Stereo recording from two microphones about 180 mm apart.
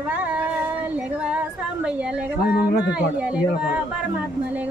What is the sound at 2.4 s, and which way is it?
Speech, 60° left (ahead or behind).